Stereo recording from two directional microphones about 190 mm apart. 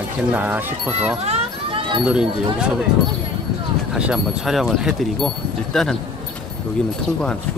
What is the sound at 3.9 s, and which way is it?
Speech, 5° right (ahead or behind).